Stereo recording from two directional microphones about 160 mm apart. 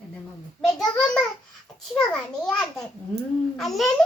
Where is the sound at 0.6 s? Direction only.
5° left (ahead or behind).